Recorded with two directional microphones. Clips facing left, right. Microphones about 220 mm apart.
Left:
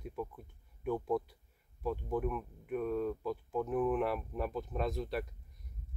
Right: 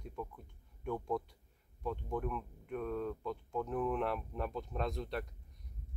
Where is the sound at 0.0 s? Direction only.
5° left (ahead or behind).